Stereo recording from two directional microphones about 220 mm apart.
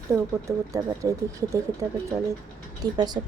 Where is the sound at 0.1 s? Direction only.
15° right (ahead or behind).